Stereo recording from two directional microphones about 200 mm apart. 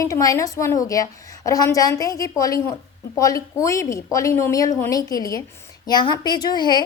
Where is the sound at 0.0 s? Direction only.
15° left (ahead or behind).